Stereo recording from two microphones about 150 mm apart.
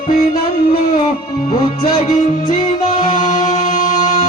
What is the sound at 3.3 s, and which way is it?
Music, 45° left (ahead or behind).